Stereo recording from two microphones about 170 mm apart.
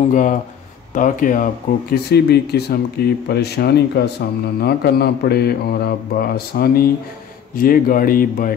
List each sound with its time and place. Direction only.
0.1 s speech: 50° left (ahead or behind)